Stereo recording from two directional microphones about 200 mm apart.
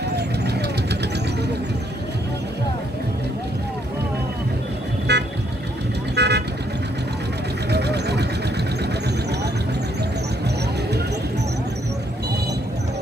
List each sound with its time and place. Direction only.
0.1 s vehicle: 55° right (ahead or behind)
5.1 s vehicle: 55° right (ahead or behind)
7.7 s a sound: 55° right (ahead or behind)